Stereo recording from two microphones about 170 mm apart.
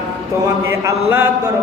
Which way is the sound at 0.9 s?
15° right (ahead or behind).